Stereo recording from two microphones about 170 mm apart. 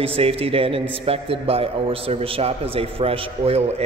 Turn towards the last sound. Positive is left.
turn(degrees=-35)  # may be behind; listen again after turning